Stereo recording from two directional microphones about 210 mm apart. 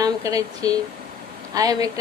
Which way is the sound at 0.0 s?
15° right (ahead or behind).